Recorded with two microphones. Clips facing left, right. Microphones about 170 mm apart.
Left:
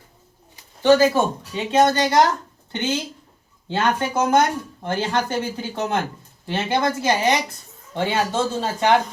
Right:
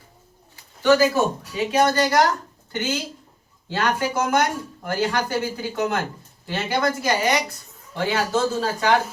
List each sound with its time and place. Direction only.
0.8 s speech: 30° left (ahead or behind)
3.7 s speech: 25° left (ahead or behind)